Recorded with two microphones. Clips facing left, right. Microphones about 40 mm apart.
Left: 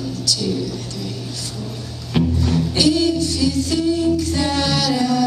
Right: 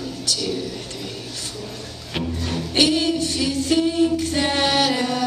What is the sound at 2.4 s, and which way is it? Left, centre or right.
Child singing, right.